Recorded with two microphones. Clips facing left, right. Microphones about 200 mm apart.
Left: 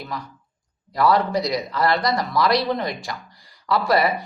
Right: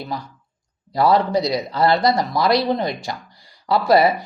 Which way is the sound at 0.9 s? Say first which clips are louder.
Right 2 dB; 30° right (ahead or behind).